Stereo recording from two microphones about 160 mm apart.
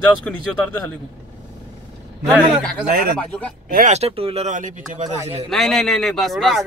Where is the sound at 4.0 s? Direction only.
40° right (ahead or behind).